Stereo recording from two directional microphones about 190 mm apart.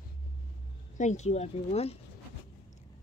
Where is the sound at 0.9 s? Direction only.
40° left (ahead or behind).